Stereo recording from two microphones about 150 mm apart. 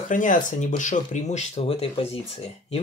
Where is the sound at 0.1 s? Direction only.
60° left (ahead or behind).